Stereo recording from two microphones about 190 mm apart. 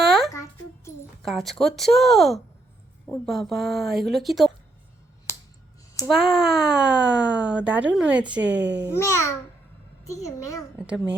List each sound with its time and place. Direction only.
0.0 s music: centre (ahead or behind)
1.2 s speech: centre (ahead or behind)
6.1 s speech: centre (ahead or behind)
8.6 s a child's voice: 65° right (ahead or behind)
9.0 s a child's voice: 15° left (ahead or behind)
10.8 s speech: 5° right (ahead or behind)